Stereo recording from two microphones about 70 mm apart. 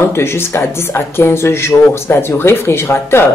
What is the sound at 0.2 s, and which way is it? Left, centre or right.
Speech, left.